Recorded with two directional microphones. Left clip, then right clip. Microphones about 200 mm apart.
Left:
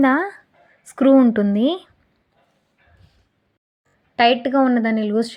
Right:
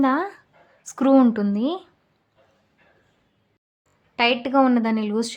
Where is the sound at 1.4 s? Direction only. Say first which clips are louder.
Left 5 dB; 20° left (ahead or behind).